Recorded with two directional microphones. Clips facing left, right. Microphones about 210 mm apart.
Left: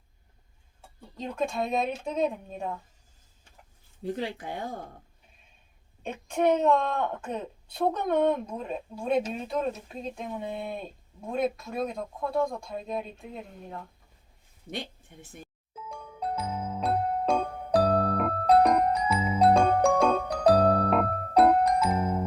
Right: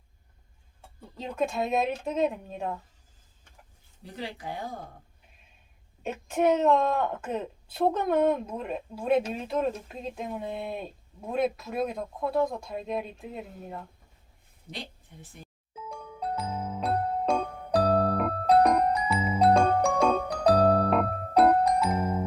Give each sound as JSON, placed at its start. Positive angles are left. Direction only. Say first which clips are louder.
{"t": 0.8, "sound": "a woman's voice", "louder": "left 1 dB", "side_deg": -5}
{"t": 4.1, "sound": "speech", "louder": "left 5 dB", "side_deg": 50}
{"t": 6.0, "sound": "a woman's voice", "louder": "right 1 dB", "side_deg": -5}
{"t": 15.7, "sound": "music", "louder": "right 2 dB", "side_deg": 0}